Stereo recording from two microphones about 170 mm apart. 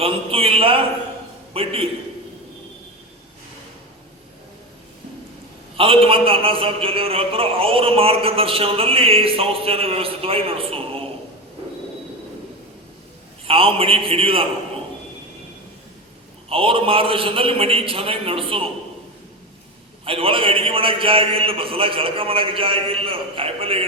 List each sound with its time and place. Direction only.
0.0 s a man's voice: 35° right (ahead or behind)
5.7 s a man's voice: 35° right (ahead or behind)
13.4 s a man's voice: 35° right (ahead or behind)
16.5 s a man's voice: 35° right (ahead or behind)
20.1 s a man's voice: 30° right (ahead or behind)